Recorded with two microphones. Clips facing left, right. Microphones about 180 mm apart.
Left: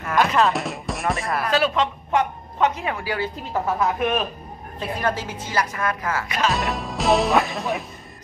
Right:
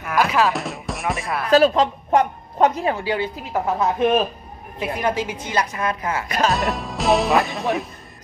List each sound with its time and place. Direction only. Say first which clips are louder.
0.0 s speech: even; 5° right (ahead or behind)
1.5 s a woman's voice: right 8 dB; 40° right (ahead or behind); by 6.2 s 20° right (ahead or behind)
6.2 s a woman's voice: right 4 dB; 40° right (ahead or behind)
6.5 s speech: right 2 dB; centre (ahead or behind)